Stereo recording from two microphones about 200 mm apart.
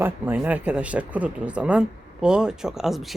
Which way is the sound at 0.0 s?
10° right (ahead or behind).